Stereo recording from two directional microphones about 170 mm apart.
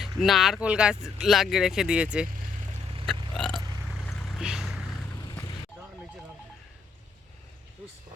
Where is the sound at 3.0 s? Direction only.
Centre (ahead or behind).